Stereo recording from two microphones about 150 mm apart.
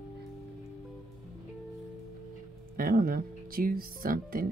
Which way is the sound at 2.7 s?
80° right.